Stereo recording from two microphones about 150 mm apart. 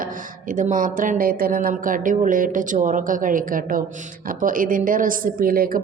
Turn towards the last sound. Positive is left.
turn(degrees=-75)  # may be behind; listen again after turning